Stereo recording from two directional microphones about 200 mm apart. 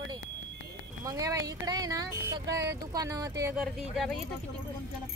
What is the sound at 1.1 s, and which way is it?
Speech, 15° right (ahead or behind).